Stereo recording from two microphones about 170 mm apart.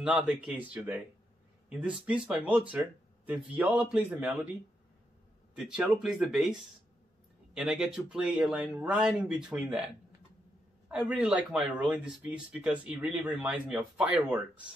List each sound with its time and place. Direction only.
0.0 s speech: 5° right (ahead or behind)
5.5 s speech: 5° right (ahead or behind)
7.5 s speech: 5° right (ahead or behind)
10.9 s speech: 5° right (ahead or behind)